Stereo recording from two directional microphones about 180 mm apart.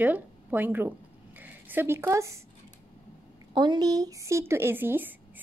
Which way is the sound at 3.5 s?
25° right (ahead or behind).